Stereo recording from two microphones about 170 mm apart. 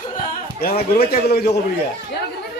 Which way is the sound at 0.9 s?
70° left (ahead or behind).